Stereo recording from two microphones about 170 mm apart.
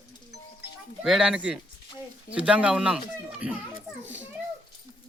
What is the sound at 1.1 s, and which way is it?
A man's voice, 5° right (ahead or behind).